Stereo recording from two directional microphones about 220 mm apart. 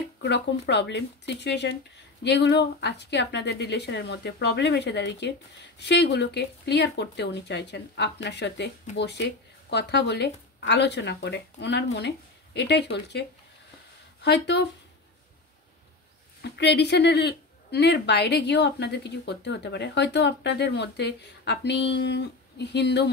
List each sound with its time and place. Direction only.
0.2 s speech: 50° left (ahead or behind)
14.2 s speech: 50° left (ahead or behind)
16.4 s speech: 50° left (ahead or behind)